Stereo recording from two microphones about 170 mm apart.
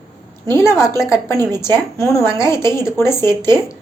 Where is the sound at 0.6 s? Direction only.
15° left (ahead or behind).